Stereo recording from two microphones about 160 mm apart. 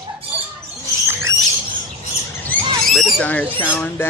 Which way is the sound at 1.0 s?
15° right (ahead or behind).